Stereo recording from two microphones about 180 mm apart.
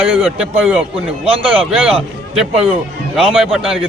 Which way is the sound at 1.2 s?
30° right (ahead or behind).